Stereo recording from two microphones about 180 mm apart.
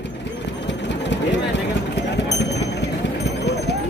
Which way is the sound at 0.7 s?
80° left.